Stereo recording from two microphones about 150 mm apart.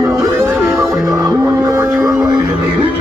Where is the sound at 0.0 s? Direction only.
20° right (ahead or behind).